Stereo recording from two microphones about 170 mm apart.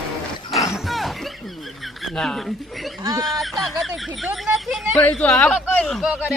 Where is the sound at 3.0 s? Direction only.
25° right (ahead or behind).